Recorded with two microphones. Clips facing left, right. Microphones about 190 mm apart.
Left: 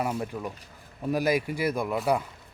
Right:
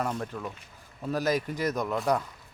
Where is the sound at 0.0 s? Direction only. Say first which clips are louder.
Left 2 dB; 10° left (ahead or behind).